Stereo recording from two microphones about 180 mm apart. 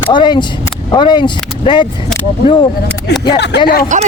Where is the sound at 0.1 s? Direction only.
25° left (ahead or behind).